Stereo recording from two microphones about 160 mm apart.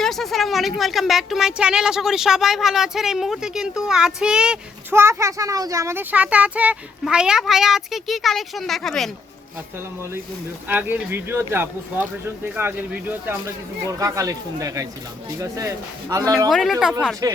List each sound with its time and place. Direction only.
0.0 s speech: centre (ahead or behind)
10.7 s speech: 10° right (ahead or behind)
16.5 s speech: centre (ahead or behind)
17.2 s speech: 20° right (ahead or behind)